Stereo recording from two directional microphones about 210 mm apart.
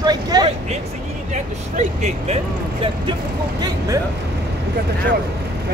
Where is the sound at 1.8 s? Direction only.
35° right (ahead or behind).